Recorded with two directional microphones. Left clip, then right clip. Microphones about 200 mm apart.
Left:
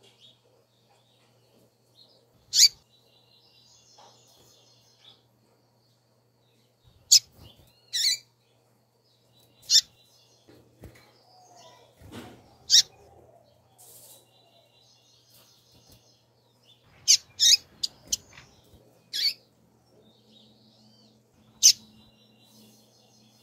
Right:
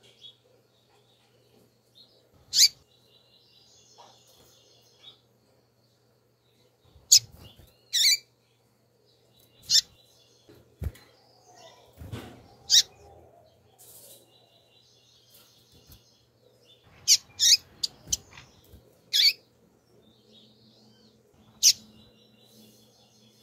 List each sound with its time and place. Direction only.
2.5 s mouse: centre (ahead or behind)
7.1 s bird: centre (ahead or behind)
7.9 s squawk: 15° right (ahead or behind)
9.7 s owl: centre (ahead or behind)
12.7 s mouse: centre (ahead or behind)
17.0 s a sound: centre (ahead or behind)
19.0 s squawk: 20° right (ahead or behind)
21.6 s bird: centre (ahead or behind)